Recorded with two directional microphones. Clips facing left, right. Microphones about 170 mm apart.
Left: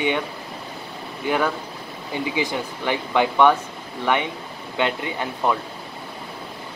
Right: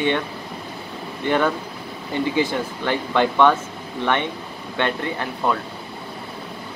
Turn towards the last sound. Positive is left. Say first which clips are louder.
# even
turn(degrees=15)  # may be behind; listen again after turning